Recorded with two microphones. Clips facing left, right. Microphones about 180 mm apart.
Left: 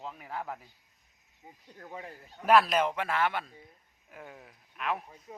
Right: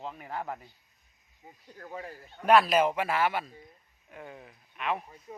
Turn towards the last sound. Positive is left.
turn(degrees=0)  # may be behind; listen again after turning